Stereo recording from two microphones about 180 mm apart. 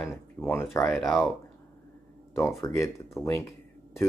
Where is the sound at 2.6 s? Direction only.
15° left (ahead or behind).